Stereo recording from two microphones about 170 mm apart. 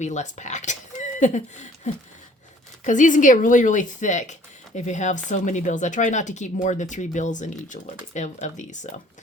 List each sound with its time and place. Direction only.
0.0 s speech: 45° left (ahead or behind)